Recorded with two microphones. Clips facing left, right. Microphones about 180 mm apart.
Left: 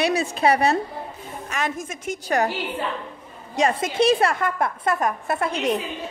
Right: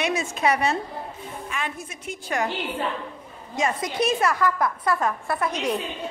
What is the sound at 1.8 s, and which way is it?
Speech, 45° left (ahead or behind).